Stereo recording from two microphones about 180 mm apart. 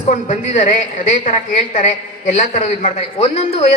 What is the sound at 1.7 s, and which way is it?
A man's voice, 40° left (ahead or behind).